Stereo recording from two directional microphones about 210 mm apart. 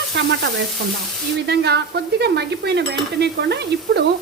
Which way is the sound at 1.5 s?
50° right (ahead or behind).